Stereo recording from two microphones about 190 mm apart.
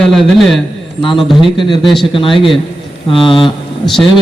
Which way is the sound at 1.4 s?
25° left (ahead or behind).